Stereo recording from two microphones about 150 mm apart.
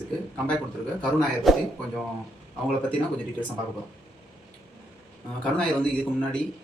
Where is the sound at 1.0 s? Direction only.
Centre (ahead or behind).